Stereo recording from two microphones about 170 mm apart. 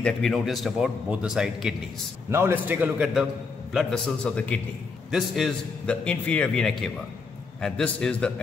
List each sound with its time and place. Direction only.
0.0 s a man's voice: centre (ahead or behind)
2.3 s a man's voice: 15° right (ahead or behind)
3.7 s a man's voice: 5° left (ahead or behind)